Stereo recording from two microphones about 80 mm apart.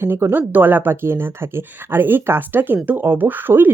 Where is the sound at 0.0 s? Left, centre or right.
Right.